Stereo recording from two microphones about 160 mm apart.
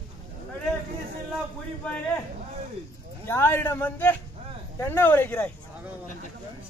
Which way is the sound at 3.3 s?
15° left (ahead or behind).